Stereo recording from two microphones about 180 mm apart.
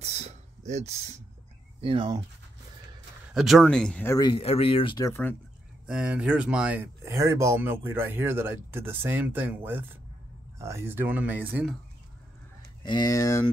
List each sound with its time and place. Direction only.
0.0 s a sound: 35° right (ahead or behind)
1.8 s speech: 30° right (ahead or behind)
3.3 s speech: centre (ahead or behind)
4.3 s speech: 30° left (ahead or behind); by 5.3 s 15° left (ahead or behind)
5.9 s speech: 5° right (ahead or behind)
12.8 s speech: 20° left (ahead or behind)